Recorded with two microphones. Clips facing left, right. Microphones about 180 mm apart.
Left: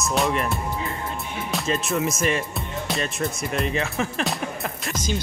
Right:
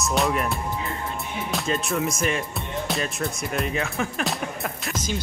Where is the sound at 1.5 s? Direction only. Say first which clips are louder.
Left 1 dB; centre (ahead or behind).